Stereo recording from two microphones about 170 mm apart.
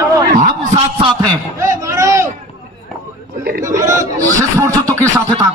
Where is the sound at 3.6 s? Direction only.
20° right (ahead or behind).